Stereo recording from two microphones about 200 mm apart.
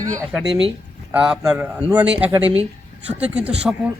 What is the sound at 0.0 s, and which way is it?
Speech, 15° right (ahead or behind).